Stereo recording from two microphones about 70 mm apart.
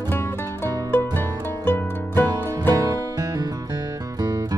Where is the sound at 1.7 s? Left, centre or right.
Left.